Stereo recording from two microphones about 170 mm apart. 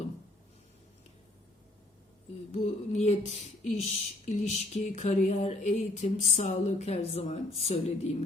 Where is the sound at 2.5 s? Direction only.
40° left (ahead or behind).